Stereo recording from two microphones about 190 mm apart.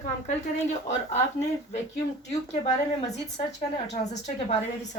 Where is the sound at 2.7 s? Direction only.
35° left (ahead or behind).